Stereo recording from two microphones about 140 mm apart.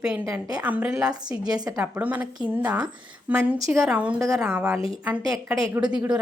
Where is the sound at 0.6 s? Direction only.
10° right (ahead or behind).